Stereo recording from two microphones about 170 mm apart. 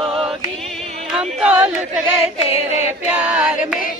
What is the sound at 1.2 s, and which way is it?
Speech, 5° right (ahead or behind).